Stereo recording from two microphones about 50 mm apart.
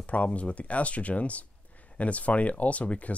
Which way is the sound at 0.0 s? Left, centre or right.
Left.